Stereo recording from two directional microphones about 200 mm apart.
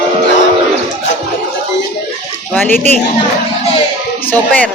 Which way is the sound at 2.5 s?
10° left (ahead or behind).